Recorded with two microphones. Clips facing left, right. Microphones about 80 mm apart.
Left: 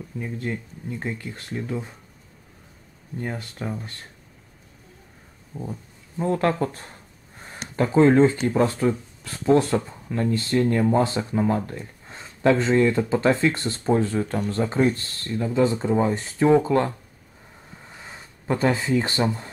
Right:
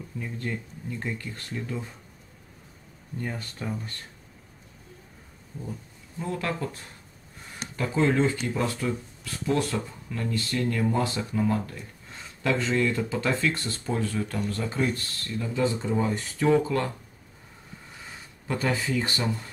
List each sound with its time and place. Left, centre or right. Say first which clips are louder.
0.2 s speech: left 4 dB; centre
3.2 s speech: left 3 dB; centre
5.5 s speech: left 5 dB; left
6.1 s speech: left 8 dB; left
18.5 s speech: left 6 dB; left